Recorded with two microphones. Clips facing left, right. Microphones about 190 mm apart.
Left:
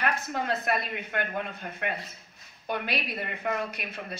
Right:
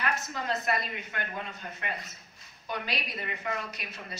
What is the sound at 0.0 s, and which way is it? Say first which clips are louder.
A woman's voice: left 3 dB; 55° left (ahead or behind).